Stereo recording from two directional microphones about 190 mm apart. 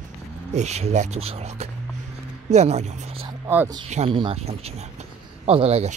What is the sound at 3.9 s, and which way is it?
Speech, 30° right (ahead or behind).